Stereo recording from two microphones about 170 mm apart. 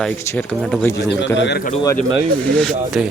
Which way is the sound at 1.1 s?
90° left.